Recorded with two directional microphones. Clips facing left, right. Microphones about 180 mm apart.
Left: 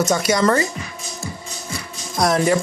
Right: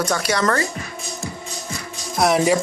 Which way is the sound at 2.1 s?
10° right (ahead or behind).